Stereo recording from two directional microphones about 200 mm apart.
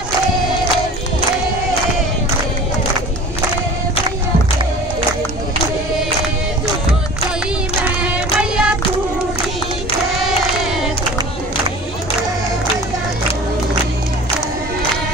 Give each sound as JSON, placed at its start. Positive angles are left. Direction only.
{"t": 7.8, "sound": "music", "side_deg": -5}